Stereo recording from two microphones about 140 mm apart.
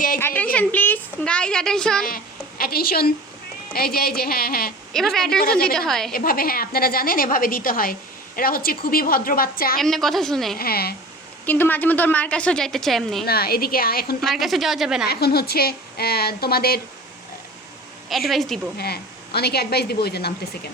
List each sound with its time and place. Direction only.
0.2 s a woman's voice: 15° left (ahead or behind)
2.0 s a woman's voice: 90° left
4.9 s a woman's voice: centre (ahead or behind)
5.4 s a woman's voice: 90° left
5.7 s a woman's voice: 5° left (ahead or behind)
6.1 s a woman's voice: 90° left
9.7 s a woman's voice: centre (ahead or behind)
10.6 s a woman's voice: 90° left
11.4 s a woman's voice: 15° left (ahead or behind)
13.2 s a woman's voice: 90° left
14.2 s a woman's voice: centre (ahead or behind)
15.0 s a woman's voice: 90° left
18.1 s a woman's voice: centre (ahead or behind)